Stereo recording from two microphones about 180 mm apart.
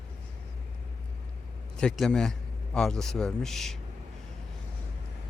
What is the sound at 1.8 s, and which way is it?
A man's voice, 5° left (ahead or behind).